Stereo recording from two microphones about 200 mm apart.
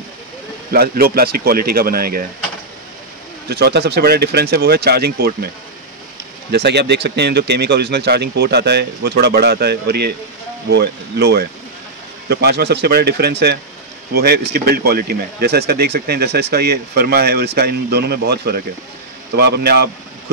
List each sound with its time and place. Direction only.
0.7 s speech: 50° right (ahead or behind)
3.4 s speech: 55° right (ahead or behind)
6.5 s speech: 55° right (ahead or behind)